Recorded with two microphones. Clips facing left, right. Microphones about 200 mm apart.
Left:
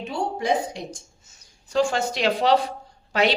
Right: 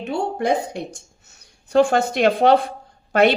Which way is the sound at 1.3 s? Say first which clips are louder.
Right 8 dB; 60° right (ahead or behind).